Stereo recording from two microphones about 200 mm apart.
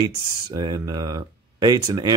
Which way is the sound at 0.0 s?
20° right (ahead or behind).